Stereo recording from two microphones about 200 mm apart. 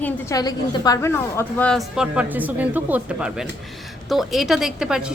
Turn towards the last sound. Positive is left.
turn(degrees=-5)  # may be behind; listen again after turning